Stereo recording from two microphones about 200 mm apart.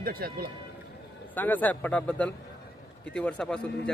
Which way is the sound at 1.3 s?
10° left (ahead or behind).